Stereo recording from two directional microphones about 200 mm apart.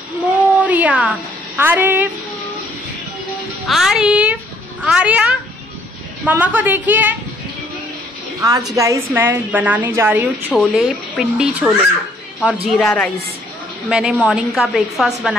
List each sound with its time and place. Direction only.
0.6 s a sound: 10° right (ahead or behind)
1.6 s a woman's voice: 10° right (ahead or behind)
3.6 s a woman's voice: centre (ahead or behind)
8.4 s a woman's voice: 20° right (ahead or behind)
10.5 s speech: centre (ahead or behind)